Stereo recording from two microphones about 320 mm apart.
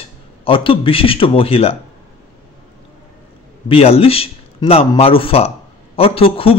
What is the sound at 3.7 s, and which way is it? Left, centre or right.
A man's voice, centre.